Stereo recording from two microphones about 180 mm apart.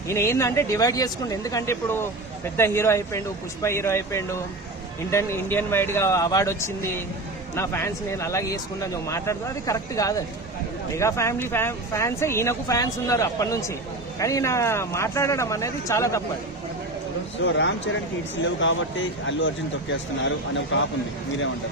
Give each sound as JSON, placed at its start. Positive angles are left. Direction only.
{"t": 0.1, "sound": "speech", "side_deg": 15}
{"t": 17.3, "sound": "speech", "side_deg": 90}